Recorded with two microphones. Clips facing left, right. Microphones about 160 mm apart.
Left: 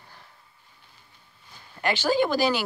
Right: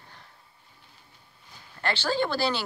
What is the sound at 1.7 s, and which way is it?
Speech, 15° left (ahead or behind).